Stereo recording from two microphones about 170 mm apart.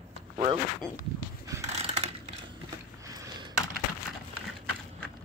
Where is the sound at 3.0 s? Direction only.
20° right (ahead or behind).